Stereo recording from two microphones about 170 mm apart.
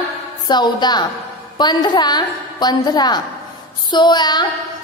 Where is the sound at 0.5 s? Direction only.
25° left (ahead or behind).